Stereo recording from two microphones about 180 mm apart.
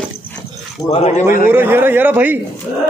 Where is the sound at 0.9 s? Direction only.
35° left (ahead or behind).